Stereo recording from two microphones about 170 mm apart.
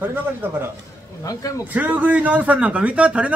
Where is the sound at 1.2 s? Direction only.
20° left (ahead or behind).